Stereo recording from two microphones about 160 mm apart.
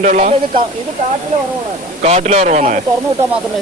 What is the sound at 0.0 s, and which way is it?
Speech, 50° right (ahead or behind).